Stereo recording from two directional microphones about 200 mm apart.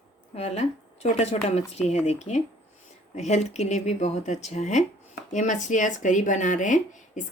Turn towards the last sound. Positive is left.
turn(degrees=40)  # may be behind; listen again after turning